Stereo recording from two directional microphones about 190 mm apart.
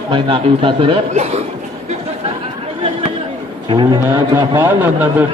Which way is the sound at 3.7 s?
25° right (ahead or behind).